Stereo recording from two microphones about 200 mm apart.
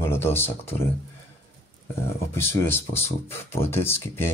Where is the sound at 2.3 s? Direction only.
10° left (ahead or behind).